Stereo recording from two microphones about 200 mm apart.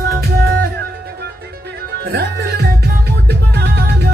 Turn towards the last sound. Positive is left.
turn(degrees=-55)  # may be behind; listen again after turning